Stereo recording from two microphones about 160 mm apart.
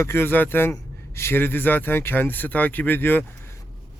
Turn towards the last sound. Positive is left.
turn(degrees=10)  # may be behind; listen again after turning